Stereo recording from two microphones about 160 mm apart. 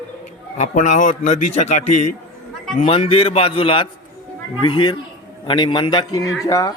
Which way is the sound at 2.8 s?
35° left (ahead or behind).